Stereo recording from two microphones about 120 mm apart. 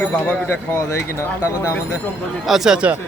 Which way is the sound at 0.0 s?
15° left (ahead or behind).